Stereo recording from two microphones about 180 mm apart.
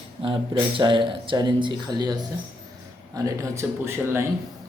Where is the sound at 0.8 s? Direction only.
25° right (ahead or behind).